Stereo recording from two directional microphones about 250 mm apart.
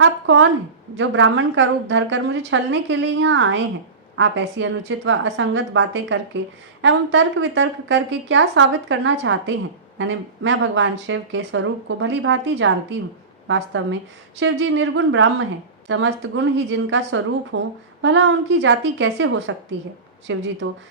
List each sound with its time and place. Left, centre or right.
0.0 s a sound: right
0.9 s speech: right
14.3 s speech: right